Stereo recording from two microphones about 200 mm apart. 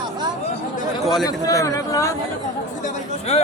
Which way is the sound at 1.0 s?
Centre (ahead or behind).